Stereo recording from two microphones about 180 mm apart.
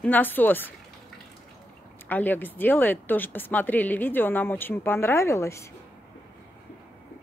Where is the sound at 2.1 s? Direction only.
10° left (ahead or behind).